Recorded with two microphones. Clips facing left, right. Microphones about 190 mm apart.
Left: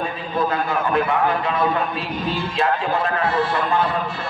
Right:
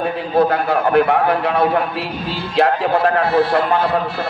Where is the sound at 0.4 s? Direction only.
70° right (ahead or behind).